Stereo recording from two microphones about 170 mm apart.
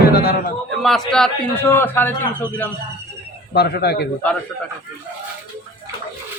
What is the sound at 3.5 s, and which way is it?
Speech, 70° left (ahead or behind).